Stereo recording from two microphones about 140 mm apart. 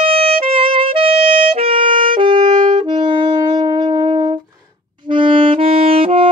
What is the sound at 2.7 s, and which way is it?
Saxophone, 30° right (ahead or behind).